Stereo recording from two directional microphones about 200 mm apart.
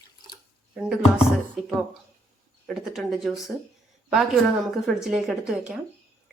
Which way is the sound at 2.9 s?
Centre (ahead or behind).